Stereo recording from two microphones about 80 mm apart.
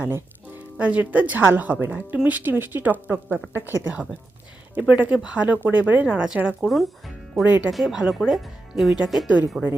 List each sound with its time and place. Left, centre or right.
0.0 s music: right
0.9 s a woman's voice: centre
6.6 s speech: centre
7.4 s a woman's voice: right
7.7 s speech: centre